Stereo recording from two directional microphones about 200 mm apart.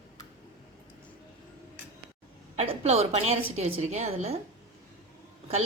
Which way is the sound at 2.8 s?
30° right (ahead or behind).